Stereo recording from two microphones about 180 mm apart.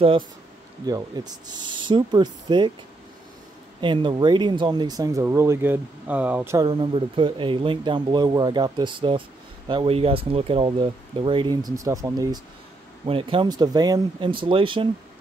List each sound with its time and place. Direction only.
0.8 s speech: 20° right (ahead or behind)
3.8 s speech: 25° right (ahead or behind)
13.0 s speech: 30° right (ahead or behind)